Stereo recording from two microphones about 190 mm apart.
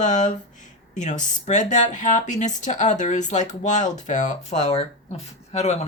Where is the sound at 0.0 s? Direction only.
40° left (ahead or behind).